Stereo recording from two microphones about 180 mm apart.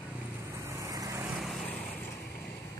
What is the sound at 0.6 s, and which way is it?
Vehicle, 20° right (ahead or behind).